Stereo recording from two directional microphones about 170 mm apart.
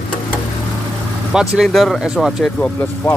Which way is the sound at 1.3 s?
Centre (ahead or behind).